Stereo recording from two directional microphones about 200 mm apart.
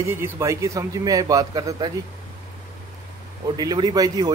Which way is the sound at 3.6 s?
20° right (ahead or behind).